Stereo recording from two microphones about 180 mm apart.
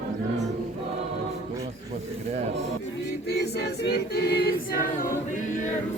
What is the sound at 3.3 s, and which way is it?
Choir, 65° left (ahead or behind).